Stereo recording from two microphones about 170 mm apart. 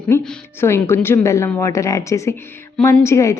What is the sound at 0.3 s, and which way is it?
A woman's voice, 10° left (ahead or behind).